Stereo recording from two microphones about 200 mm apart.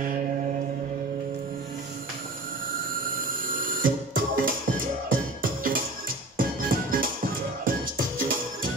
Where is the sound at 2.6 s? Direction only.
45° right (ahead or behind).